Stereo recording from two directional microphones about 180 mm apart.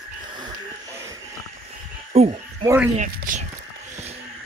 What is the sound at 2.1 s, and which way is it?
Speech, 35° right (ahead or behind).